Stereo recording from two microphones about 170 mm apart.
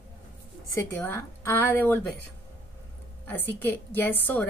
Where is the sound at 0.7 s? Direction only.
15° left (ahead or behind).